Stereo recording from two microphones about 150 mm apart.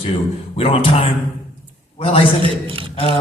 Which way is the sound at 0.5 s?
40° left (ahead or behind).